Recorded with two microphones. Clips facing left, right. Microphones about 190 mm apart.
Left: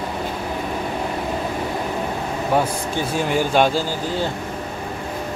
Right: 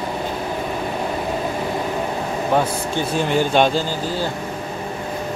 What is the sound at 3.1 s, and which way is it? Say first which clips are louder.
Speech: right 1 dB; 5° left (ahead or behind).